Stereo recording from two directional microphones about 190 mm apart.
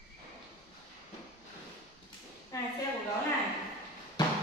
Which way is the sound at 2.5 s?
15° left (ahead or behind).